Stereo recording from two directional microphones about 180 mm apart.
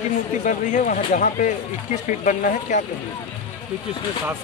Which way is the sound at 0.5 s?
45° left (ahead or behind).